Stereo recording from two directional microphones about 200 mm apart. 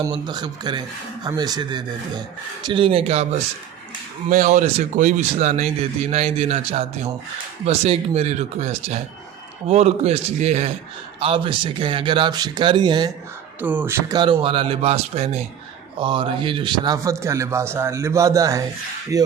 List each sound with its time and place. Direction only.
0.0 s speech: 20° right (ahead or behind)
13.6 s a man's voice: 10° right (ahead or behind)